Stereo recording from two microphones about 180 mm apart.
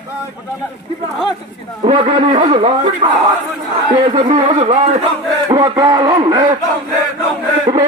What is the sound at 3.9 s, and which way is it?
Speech, 35° right (ahead or behind).